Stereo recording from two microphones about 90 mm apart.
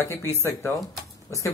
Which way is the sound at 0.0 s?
30° left (ahead or behind).